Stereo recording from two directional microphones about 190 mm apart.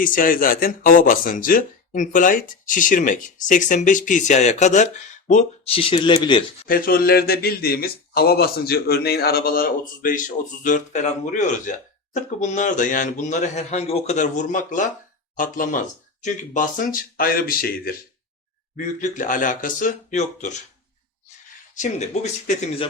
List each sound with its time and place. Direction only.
0.0 s speech: 45° left (ahead or behind); by 6.4 s 25° left (ahead or behind)
6.7 s speech: 50° left (ahead or behind)
21.8 s speech: 35° left (ahead or behind)